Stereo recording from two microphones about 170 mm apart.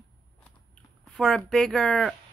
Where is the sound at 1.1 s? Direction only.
Centre (ahead or behind).